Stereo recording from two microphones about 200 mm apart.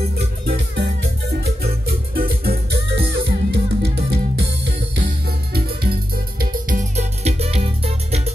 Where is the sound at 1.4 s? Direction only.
50° right (ahead or behind).